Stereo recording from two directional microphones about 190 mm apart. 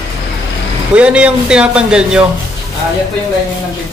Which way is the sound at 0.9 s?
5° right (ahead or behind).